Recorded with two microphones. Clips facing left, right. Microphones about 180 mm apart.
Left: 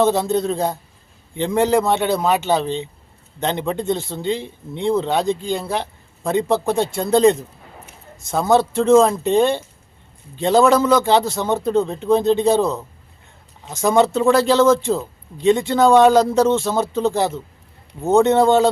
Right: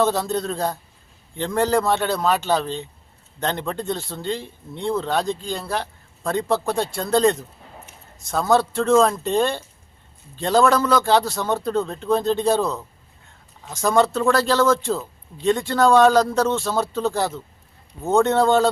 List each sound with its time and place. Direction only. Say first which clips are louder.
0.0 s speech: left 4 dB; 20° left (ahead or behind)
2.0 s a man's voice: left 3 dB; 20° left (ahead or behind)
5.6 s a sound: left 3 dB; 20° left (ahead or behind)
6.5 s speech: left 3 dB; 20° left (ahead or behind)
10.6 s a man's voice: left 3 dB; 5° left (ahead or behind)
10.8 s speech: left 3 dB; 20° left (ahead or behind)